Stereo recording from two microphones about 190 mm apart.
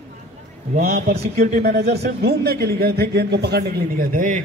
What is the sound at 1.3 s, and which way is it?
Speech, 40° right (ahead or behind).